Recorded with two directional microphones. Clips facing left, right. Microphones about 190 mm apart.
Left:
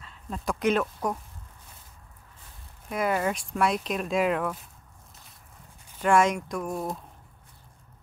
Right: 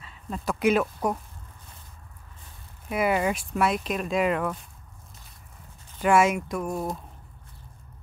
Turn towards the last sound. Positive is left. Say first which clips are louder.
# right 2 dB
turn(degrees=0)  # may be behind; listen again after turning